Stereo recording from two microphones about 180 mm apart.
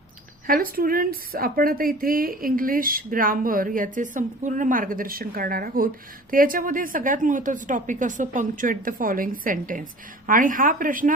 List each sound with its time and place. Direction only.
0.4 s speech: 50° right (ahead or behind)